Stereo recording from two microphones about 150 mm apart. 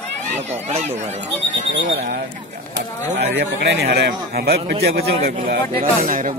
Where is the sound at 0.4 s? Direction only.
45° right (ahead or behind).